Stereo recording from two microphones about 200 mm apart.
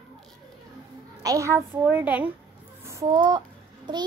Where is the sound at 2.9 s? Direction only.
20° right (ahead or behind).